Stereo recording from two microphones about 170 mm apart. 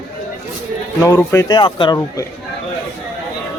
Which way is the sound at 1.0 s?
15° left (ahead or behind).